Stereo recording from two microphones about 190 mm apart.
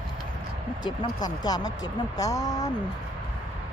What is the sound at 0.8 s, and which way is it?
Speech, 20° left (ahead or behind).